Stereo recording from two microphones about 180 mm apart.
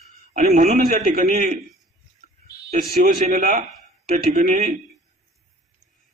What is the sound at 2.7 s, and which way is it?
A man's voice, 45° right (ahead or behind).